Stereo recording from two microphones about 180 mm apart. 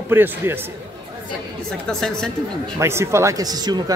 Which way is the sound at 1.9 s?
5° left (ahead or behind).